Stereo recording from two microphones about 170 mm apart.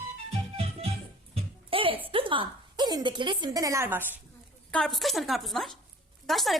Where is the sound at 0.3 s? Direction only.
35° right (ahead or behind).